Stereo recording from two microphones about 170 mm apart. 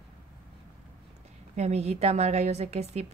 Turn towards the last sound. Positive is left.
turn(degrees=-40)  # may be behind; listen again after turning